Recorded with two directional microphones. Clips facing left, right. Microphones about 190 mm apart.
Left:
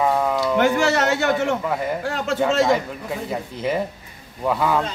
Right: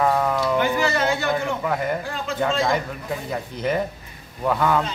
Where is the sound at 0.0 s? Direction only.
5° left (ahead or behind).